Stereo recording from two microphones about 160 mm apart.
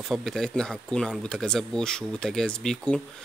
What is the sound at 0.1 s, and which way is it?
Speech, centre (ahead or behind).